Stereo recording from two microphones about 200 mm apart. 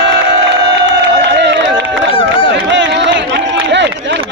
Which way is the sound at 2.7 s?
65° right (ahead or behind).